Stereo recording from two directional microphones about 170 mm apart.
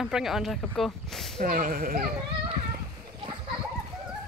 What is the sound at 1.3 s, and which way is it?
Speech, 55° right (ahead or behind).